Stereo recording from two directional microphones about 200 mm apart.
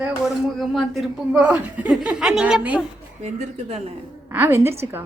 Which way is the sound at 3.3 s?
35° right (ahead or behind).